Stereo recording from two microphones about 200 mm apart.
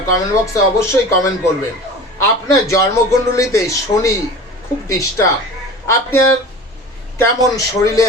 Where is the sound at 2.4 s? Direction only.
15° left (ahead or behind).